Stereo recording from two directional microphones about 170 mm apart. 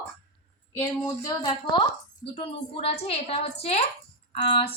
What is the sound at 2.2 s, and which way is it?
A woman's voice, 35° left (ahead or behind).